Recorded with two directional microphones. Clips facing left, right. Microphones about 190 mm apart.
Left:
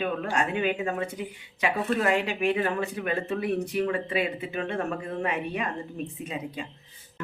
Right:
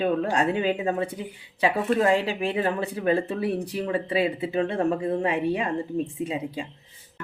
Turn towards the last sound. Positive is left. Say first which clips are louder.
# right 5 dB
turn(degrees=-30)  # may be behind; listen again after turning